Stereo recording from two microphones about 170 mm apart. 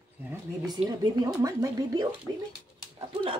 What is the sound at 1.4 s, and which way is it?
Speech, 20° right (ahead or behind).